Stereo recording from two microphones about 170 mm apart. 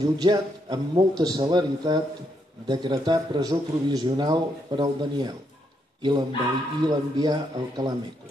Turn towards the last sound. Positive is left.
turn(degrees=-25)  # may be behind; listen again after turning